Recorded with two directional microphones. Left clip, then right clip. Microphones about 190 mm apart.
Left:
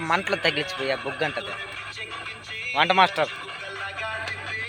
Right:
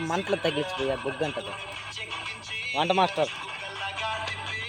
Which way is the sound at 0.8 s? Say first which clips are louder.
Left 2 dB; 45° right (ahead or behind).